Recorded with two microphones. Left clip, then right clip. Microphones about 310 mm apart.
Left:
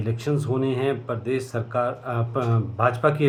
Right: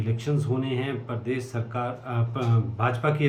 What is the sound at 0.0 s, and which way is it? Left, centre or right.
Speech, centre.